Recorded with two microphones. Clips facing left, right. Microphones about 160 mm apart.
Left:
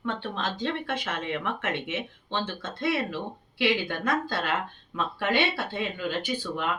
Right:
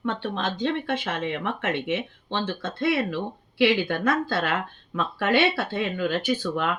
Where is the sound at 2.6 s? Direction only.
60° right (ahead or behind).